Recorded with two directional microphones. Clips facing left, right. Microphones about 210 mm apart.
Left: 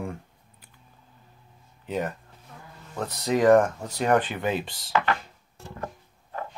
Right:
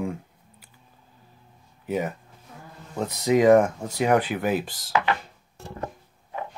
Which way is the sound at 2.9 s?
15° right (ahead or behind).